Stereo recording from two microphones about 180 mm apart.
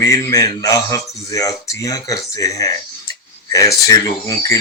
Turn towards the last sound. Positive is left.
turn(degrees=20)  # may be behind; listen again after turning